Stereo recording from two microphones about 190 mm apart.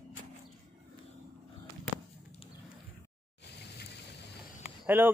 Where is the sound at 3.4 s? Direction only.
60° left (ahead or behind).